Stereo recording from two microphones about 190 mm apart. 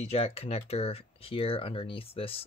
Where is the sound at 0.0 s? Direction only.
30° left (ahead or behind).